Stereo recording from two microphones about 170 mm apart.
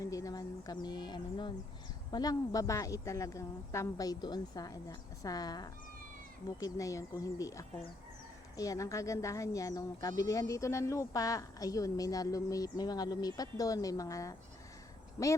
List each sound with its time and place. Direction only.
0.0 s speech: 20° left (ahead or behind)